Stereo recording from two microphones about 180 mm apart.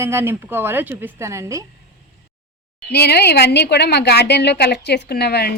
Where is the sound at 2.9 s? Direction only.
65° left (ahead or behind).